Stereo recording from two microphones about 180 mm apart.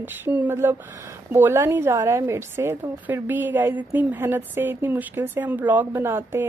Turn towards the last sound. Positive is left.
turn(degrees=-15)  # may be behind; listen again after turning